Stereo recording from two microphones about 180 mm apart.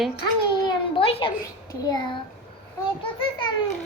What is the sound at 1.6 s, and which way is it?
A child's voice, 20° left (ahead or behind).